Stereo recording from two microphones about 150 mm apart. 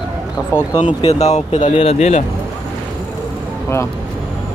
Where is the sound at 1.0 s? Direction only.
45° left (ahead or behind).